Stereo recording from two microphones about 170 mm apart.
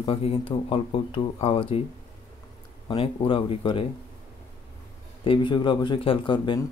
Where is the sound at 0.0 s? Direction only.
35° left (ahead or behind).